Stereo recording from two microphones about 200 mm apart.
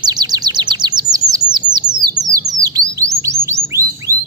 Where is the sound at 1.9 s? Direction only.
40° right (ahead or behind).